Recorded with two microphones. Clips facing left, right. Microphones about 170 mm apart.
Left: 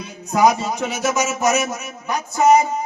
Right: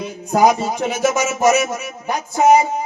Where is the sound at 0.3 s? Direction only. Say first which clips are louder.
Right 2 dB; 50° right (ahead or behind).